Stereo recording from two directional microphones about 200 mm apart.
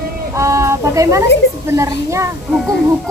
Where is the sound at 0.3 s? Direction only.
15° right (ahead or behind).